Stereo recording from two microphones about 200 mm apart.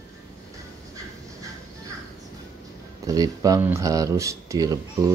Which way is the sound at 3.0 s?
15° right (ahead or behind).